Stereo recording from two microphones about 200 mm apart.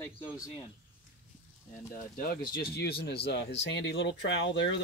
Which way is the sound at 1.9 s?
45° left (ahead or behind).